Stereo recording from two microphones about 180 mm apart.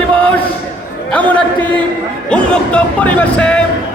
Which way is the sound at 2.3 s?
5° left (ahead or behind).